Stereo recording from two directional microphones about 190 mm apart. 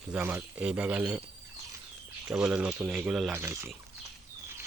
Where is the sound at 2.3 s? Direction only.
5° right (ahead or behind).